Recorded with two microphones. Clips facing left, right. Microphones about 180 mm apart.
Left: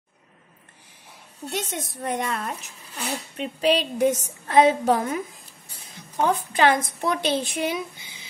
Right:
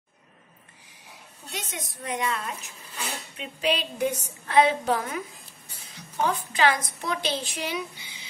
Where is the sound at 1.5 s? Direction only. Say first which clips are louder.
Left 7 dB; 50° left (ahead or behind).